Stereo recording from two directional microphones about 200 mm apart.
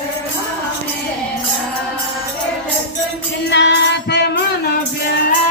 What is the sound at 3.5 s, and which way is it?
Music, 60° left (ahead or behind).